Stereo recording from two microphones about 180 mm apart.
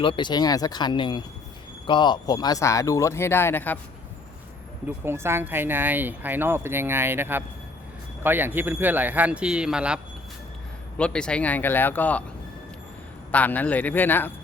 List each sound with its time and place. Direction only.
0.0 s speech: 25° left (ahead or behind); by 3.8 s 10° left (ahead or behind)
4.9 s speech: 15° right (ahead or behind); by 12.2 s 10° left (ahead or behind)
13.3 s speech: 10° left (ahead or behind)